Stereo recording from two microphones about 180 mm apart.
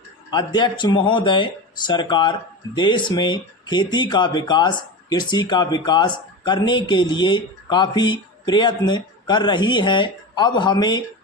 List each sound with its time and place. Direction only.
0.3 s speech: 25° left (ahead or behind)